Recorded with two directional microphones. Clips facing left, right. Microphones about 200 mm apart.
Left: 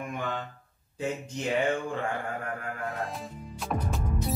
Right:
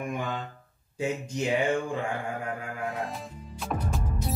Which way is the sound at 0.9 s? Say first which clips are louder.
Right 3 dB; 10° right (ahead or behind).